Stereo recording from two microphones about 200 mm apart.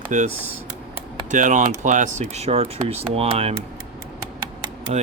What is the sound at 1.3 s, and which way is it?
Speech, 40° right (ahead or behind).